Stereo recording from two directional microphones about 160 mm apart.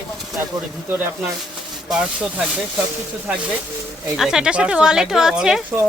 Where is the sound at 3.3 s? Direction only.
10° right (ahead or behind).